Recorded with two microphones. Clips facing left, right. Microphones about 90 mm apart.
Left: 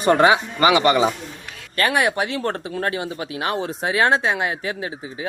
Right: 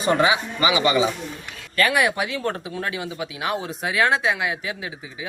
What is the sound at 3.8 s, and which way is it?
Speech, 30° left (ahead or behind).